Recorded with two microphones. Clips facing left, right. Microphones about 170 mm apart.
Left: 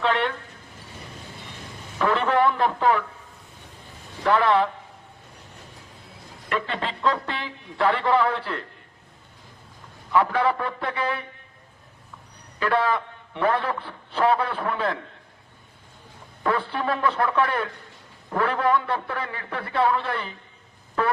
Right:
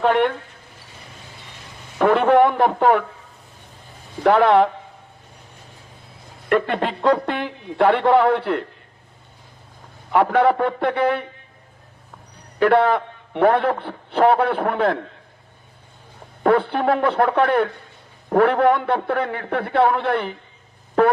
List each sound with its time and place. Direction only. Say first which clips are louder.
0.0 s speech: right 6 dB; 50° right (ahead or behind)
2.0 s a man's voice: right 7 dB; 55° right (ahead or behind)
4.2 s a man's voice: right 6 dB; 60° right (ahead or behind)
6.5 s a man's voice: right 8 dB; 55° right (ahead or behind)
10.1 s a man's voice: right 5 dB; 60° right (ahead or behind)
12.5 s a man's voice: right 7 dB; 60° right (ahead or behind)
16.4 s a man's voice: right 8 dB; 60° right (ahead or behind)